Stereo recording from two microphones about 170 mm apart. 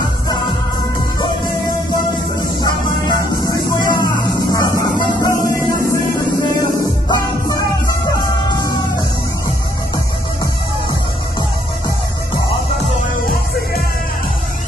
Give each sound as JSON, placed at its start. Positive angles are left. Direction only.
{"t": 2.6, "sound": "music", "side_deg": 25}
{"t": 7.1, "sound": "music", "side_deg": 20}